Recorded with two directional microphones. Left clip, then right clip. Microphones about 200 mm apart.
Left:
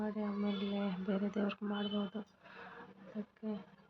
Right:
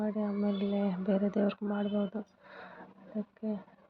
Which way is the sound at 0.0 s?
20° right (ahead or behind).